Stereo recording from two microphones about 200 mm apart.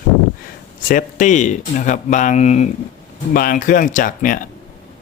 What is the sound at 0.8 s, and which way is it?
Speech, 40° left (ahead or behind).